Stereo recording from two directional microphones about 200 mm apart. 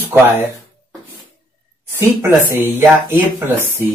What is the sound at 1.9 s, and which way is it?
Speech, 10° right (ahead or behind).